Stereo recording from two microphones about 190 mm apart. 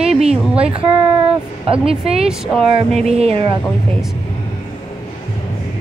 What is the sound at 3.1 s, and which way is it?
Speech, 30° right (ahead or behind).